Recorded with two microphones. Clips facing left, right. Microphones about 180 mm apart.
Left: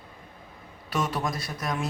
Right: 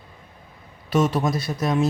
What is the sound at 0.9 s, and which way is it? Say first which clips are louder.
Speech: right 8 dB; 25° right (ahead or behind).